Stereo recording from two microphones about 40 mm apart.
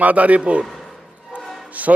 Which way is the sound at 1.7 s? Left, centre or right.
Right.